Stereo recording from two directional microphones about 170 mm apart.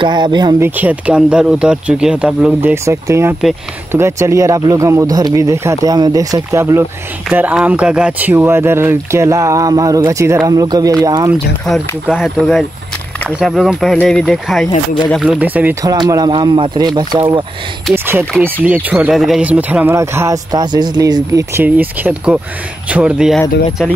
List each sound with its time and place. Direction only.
0.0 s speech: 25° right (ahead or behind)
0.6 s speech: 10° right (ahead or behind)
11.6 s speech: centre (ahead or behind)
15.8 s speech: 20° right (ahead or behind)
17.9 s speech: 15° right (ahead or behind)